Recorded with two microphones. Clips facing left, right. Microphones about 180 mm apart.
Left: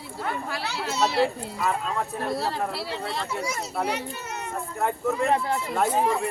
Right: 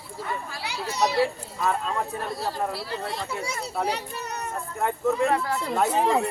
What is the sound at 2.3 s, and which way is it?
Speech, 65° left (ahead or behind).